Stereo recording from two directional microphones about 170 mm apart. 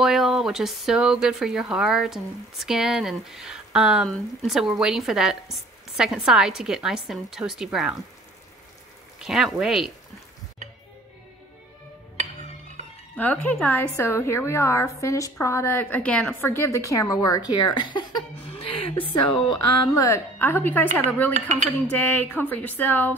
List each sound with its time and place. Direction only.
0.0 s speech: centre (ahead or behind)
9.2 s speech: centre (ahead or behind)
13.1 s a woman's voice: 10° left (ahead or behind)